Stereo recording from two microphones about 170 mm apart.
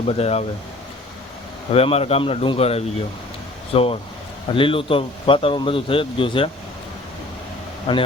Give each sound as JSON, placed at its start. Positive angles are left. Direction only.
{"t": 0.1, "sound": "speech", "side_deg": 40}
{"t": 1.7, "sound": "speech", "side_deg": 35}
{"t": 7.9, "sound": "speech", "side_deg": 30}